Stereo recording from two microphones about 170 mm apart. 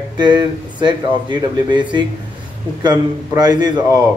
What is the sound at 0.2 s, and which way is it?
Speech, 25° right (ahead or behind).